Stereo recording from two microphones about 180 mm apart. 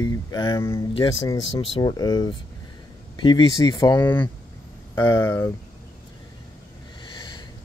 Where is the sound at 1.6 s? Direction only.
25° left (ahead or behind).